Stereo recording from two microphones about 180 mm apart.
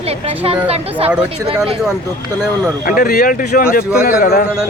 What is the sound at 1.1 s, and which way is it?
Speech, 5° right (ahead or behind).